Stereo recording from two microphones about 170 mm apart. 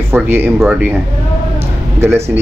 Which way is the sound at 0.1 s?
10° right (ahead or behind).